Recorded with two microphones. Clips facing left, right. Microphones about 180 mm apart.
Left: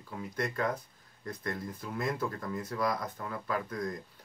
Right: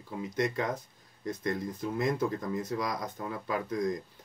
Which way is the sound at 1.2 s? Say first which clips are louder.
Right 5 dB; 20° right (ahead or behind).